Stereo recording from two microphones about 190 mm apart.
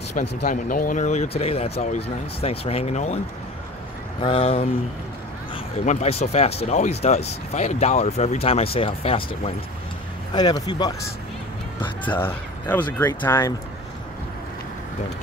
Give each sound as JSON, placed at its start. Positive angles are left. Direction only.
{"t": 0.4, "sound": "speech", "side_deg": 45}
{"t": 4.2, "sound": "speech", "side_deg": 30}
{"t": 5.9, "sound": "speech", "side_deg": 35}
{"t": 12.0, "sound": "speech", "side_deg": 10}